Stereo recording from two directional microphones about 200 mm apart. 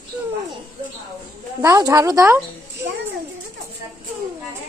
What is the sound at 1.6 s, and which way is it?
Speech, 15° right (ahead or behind).